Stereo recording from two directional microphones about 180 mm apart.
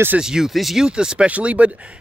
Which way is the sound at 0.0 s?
5° right (ahead or behind).